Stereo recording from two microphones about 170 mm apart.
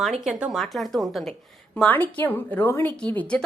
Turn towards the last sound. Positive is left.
turn(degrees=5)  # may be behind; listen again after turning